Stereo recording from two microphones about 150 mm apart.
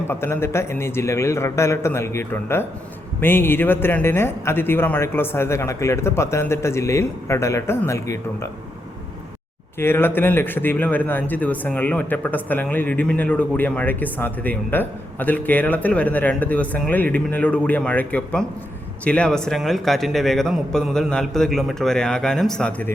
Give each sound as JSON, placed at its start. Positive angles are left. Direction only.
{"t": 0.1, "sound": "a man's voice", "side_deg": 15}
{"t": 9.7, "sound": "a man's voice", "side_deg": 15}